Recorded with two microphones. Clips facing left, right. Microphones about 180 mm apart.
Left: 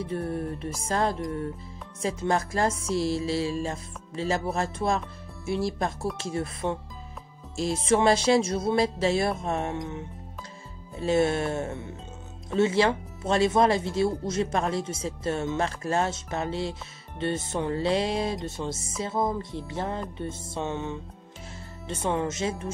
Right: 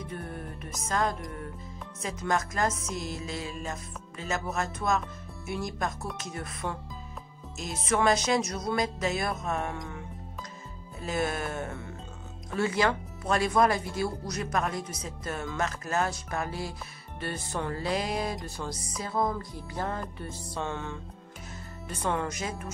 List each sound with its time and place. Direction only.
0.0 s music: 30° left (ahead or behind)
5.5 s speech: 30° left (ahead or behind)